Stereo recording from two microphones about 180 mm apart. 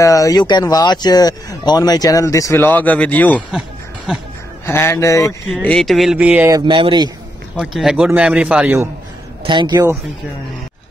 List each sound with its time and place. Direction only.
0.0 s speech: 20° left (ahead or behind)
4.6 s speech: 15° left (ahead or behind)
5.5 s a man's voice: 5° left (ahead or behind)
6.5 s speech: 25° right (ahead or behind)
7.5 s a man's voice: 5° right (ahead or behind)
9.4 s a man's voice: 25° right (ahead or behind)